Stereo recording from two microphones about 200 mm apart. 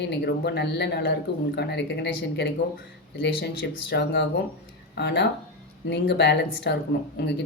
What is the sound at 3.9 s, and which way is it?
A woman's voice, 60° left (ahead or behind).